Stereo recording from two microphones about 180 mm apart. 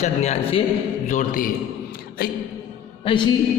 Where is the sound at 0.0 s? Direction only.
35° left (ahead or behind).